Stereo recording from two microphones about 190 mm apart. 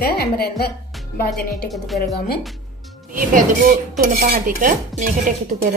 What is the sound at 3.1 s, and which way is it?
Dishes, 45° right (ahead or behind).